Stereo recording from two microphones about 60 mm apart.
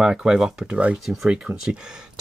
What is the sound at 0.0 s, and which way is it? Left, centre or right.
Speech, centre.